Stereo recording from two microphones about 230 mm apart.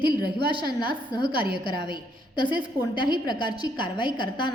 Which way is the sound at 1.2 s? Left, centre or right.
Right.